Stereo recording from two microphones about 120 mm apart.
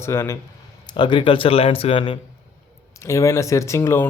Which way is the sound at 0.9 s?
45° left (ahead or behind).